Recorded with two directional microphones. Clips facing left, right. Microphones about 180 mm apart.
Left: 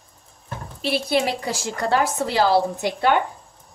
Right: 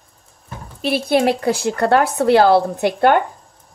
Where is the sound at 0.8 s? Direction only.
50° right (ahead or behind).